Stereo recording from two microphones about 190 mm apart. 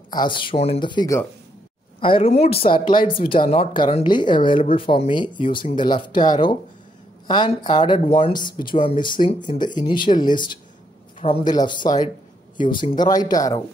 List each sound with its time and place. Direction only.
0.1 s speech: 25° left (ahead or behind)